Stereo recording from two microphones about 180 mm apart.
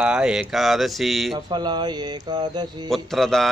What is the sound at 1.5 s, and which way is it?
Speech, 25° right (ahead or behind).